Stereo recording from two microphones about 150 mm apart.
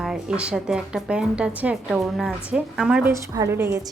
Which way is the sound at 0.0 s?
5° right (ahead or behind).